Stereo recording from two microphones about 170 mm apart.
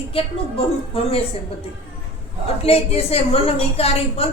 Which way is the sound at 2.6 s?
35° left (ahead or behind).